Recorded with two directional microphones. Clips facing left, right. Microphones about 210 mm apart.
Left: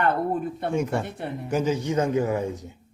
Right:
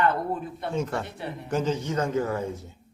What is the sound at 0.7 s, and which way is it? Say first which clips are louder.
A man's voice: left 2 dB; 15° left (ahead or behind).